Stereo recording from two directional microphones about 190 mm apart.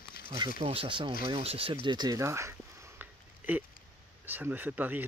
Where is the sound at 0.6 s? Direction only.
30° right (ahead or behind).